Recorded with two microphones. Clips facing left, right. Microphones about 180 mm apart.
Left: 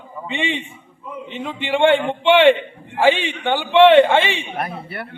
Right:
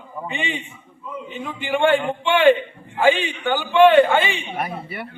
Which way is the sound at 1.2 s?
25° left (ahead or behind).